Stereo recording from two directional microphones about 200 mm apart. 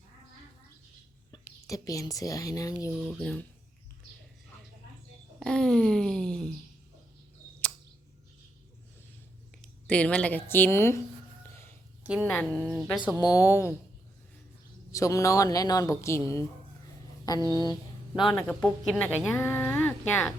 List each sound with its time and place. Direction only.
1.3 s speech: 15° left (ahead or behind)
3.0 s speech: centre (ahead or behind)
5.4 s a sound: 5° left (ahead or behind)
9.6 s speech: 5° left (ahead or behind)
12.2 s speech: 5° left (ahead or behind)
13.1 s speech: 20° left (ahead or behind)
14.9 s speech: 15° left (ahead or behind)
17.4 s speech: 20° right (ahead or behind)
18.1 s speech: centre (ahead or behind)